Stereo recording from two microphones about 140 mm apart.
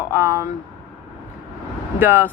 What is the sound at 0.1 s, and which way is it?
Speech, 15° right (ahead or behind).